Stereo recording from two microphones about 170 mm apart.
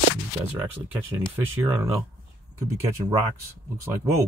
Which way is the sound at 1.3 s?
15° right (ahead or behind).